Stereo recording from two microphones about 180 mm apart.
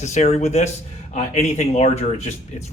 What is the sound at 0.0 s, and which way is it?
Speech, 40° left (ahead or behind).